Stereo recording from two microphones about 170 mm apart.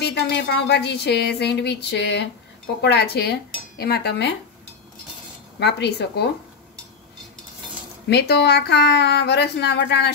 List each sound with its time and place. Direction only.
0.0 s speech: 85° left
2.8 s dishes: 80° left
5.6 s speech: 90° left
8.1 s speech: 80° left